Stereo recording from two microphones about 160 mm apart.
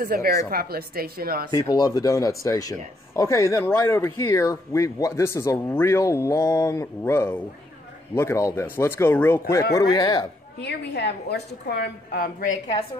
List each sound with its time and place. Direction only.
0.0 s speech: 70° right (ahead or behind)
1.5 s speech: 20° left (ahead or behind)
9.8 s speech: 25° left (ahead or behind)
10.6 s a woman's voice: 90° left; by 12.4 s 75° left (ahead or behind)